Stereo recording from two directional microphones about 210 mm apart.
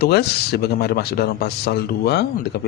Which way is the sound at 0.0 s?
50° left (ahead or behind).